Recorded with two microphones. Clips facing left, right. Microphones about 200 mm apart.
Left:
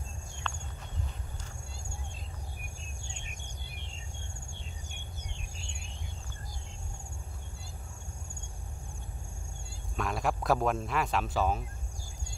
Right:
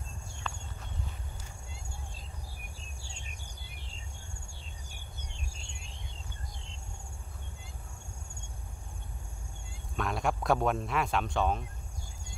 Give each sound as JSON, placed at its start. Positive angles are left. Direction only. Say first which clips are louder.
{"t": 0.5, "sound": "walk", "louder": "even", "side_deg": -5}
{"t": 3.0, "sound": "cricket", "louder": "left 2 dB", "side_deg": -35}
{"t": 4.5, "sound": "a sound", "louder": "left 3 dB", "side_deg": -35}
{"t": 9.9, "sound": "speech", "louder": "even", "side_deg": 0}